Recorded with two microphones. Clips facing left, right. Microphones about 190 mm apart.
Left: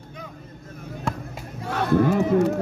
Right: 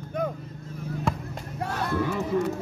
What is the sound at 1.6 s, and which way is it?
Speech, 65° left (ahead or behind).